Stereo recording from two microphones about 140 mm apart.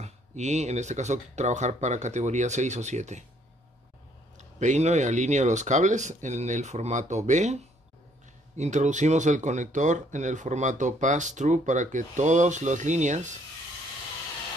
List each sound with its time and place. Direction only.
0.0 s speech: 55° right (ahead or behind)
4.6 s speech: 55° right (ahead or behind)
8.5 s speech: 60° right (ahead or behind)